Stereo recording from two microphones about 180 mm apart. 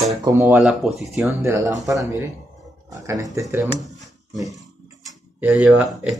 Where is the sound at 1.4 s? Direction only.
15° right (ahead or behind).